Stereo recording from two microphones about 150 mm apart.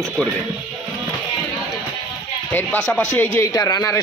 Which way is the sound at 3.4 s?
25° left (ahead or behind).